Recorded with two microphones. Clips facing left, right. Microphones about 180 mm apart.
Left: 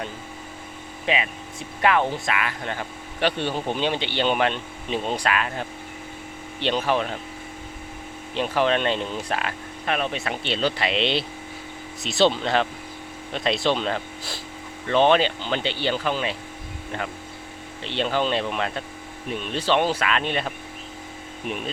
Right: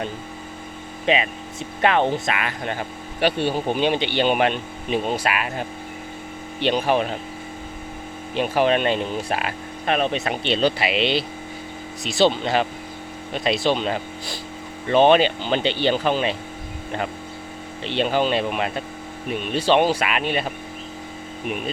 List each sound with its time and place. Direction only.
1.0 s speech: 25° right (ahead or behind)
8.4 s speech: 10° right (ahead or behind)
9.8 s speech: 25° right (ahead or behind)
17.8 s speech: 15° right (ahead or behind)